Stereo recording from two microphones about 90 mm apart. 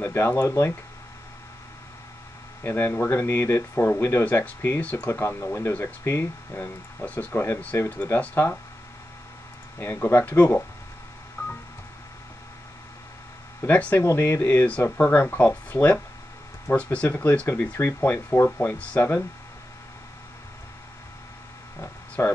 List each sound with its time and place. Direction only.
0.0 s speech: 25° left (ahead or behind)
2.6 s speech: 25° left (ahead or behind)
5.2 s speech: 30° left (ahead or behind)
9.8 s speech: 25° left (ahead or behind)
11.4 s telephone dialing: 20° left (ahead or behind)
13.6 s speech: 20° left (ahead or behind)
13.9 s speech: 30° left (ahead or behind)
22.2 s speech: 25° left (ahead or behind)